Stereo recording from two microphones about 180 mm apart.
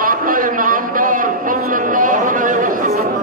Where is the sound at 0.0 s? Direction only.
50° right (ahead or behind).